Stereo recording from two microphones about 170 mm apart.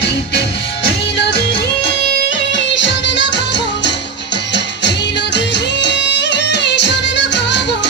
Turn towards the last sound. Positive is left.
turn(degrees=90)